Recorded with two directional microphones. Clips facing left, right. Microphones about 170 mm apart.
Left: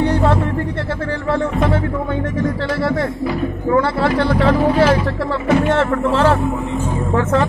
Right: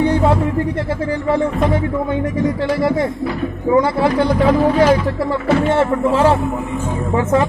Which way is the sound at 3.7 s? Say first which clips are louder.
Right 2 dB; 15° right (ahead or behind).